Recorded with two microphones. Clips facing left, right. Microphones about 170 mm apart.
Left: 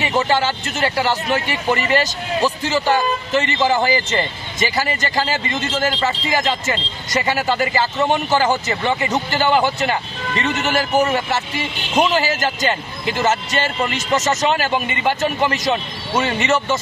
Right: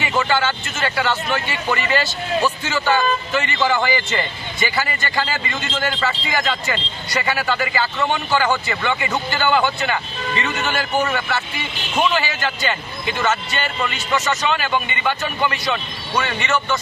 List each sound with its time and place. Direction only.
0.2 s a man's voice: 35° left (ahead or behind)